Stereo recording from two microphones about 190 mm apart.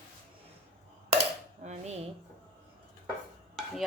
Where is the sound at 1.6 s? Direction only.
35° right (ahead or behind).